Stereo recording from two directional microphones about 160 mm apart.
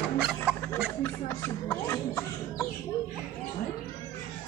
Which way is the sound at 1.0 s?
15° left (ahead or behind).